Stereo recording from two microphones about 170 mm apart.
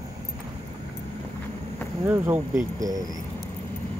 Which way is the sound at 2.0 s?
15° right (ahead or behind).